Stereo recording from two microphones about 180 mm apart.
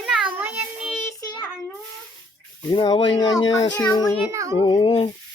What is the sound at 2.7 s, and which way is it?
Speech, 25° left (ahead or behind).